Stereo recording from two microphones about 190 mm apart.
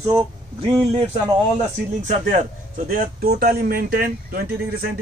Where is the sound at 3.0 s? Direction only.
50° right (ahead or behind).